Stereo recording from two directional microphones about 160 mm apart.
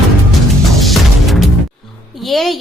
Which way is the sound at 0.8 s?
Centre (ahead or behind).